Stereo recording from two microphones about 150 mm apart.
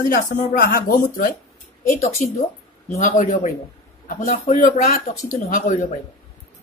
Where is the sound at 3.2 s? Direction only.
60° left (ahead or behind).